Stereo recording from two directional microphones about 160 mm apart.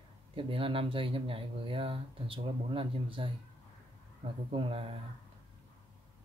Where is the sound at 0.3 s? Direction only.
35° right (ahead or behind).